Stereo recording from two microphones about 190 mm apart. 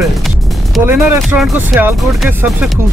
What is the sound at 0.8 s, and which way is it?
Speech, 15° right (ahead or behind).